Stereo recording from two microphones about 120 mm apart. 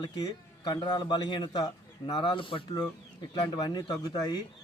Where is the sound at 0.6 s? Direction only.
35° left (ahead or behind).